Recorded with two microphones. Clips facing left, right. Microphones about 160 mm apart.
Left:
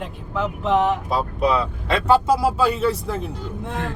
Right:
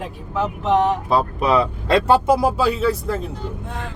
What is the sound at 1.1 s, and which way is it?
Speech, 90° right.